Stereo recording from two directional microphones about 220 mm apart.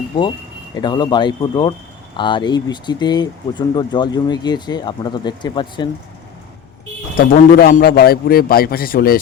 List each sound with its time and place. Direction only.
0.2 s speech: 20° left (ahead or behind)
7.2 s a man's voice: 40° left (ahead or behind)